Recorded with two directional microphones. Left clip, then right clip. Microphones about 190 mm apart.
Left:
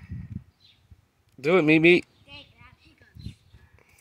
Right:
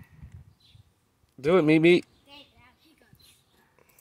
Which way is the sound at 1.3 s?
5° left (ahead or behind).